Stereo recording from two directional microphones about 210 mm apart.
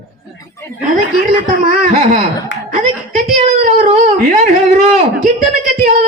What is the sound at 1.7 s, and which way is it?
Speech, 35° right (ahead or behind).